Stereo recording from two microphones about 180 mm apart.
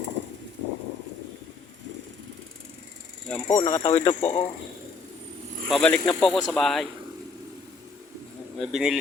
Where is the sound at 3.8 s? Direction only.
35° left (ahead or behind).